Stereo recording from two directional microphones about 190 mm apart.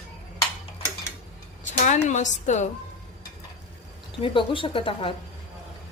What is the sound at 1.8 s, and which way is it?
Speech, 40° left (ahead or behind).